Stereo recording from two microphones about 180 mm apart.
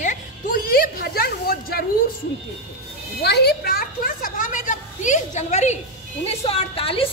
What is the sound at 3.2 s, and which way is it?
A woman's voice, 65° left (ahead or behind).